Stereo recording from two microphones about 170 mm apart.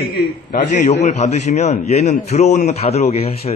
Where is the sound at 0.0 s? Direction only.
60° left (ahead or behind).